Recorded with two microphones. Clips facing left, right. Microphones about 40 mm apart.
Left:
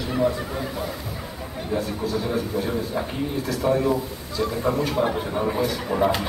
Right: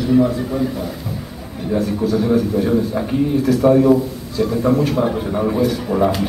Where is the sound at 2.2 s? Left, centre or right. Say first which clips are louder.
Right 9 dB; centre.